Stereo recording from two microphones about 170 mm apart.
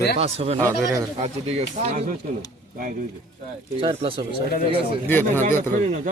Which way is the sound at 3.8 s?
30° right (ahead or behind).